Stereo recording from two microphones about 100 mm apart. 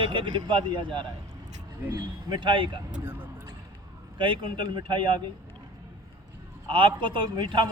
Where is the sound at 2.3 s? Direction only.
55° right (ahead or behind).